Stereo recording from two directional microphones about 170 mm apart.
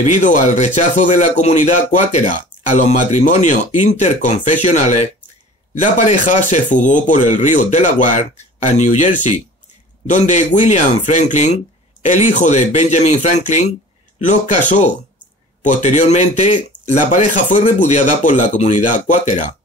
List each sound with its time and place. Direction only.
0.0 s speech: 45° left (ahead or behind)
15.6 s speech: 45° left (ahead or behind)